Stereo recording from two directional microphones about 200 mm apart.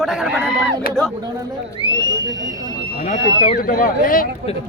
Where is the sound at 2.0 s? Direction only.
20° right (ahead or behind).